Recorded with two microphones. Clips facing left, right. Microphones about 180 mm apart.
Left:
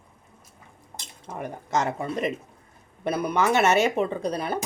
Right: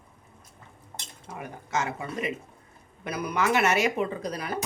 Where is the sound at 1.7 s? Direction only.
40° left (ahead or behind).